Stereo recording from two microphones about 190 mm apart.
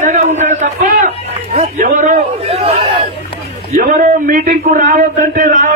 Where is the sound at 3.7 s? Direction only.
45° right (ahead or behind).